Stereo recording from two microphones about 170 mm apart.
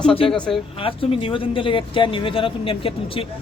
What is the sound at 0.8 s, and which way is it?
Speech, 30° left (ahead or behind).